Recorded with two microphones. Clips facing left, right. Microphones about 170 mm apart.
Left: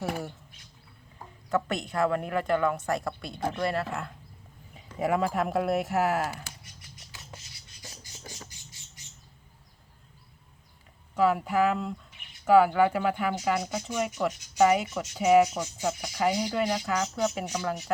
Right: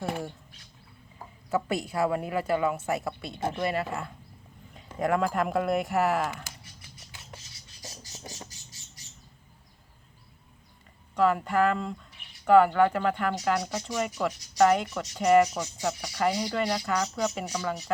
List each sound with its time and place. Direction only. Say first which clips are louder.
1.5 s speech: even; 10° right (ahead or behind)
7.8 s a sound: right 4 dB; 40° right (ahead or behind)
11.1 s speech: even; 5° left (ahead or behind)